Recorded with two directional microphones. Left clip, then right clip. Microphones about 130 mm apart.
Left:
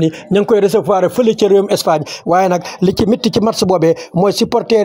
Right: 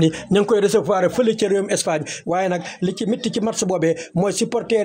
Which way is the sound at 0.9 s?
45° left (ahead or behind).